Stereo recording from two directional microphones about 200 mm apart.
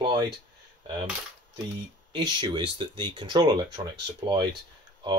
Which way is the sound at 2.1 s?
25° right (ahead or behind).